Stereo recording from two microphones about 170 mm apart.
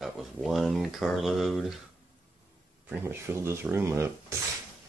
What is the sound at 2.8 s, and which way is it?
Speech, 15° right (ahead or behind).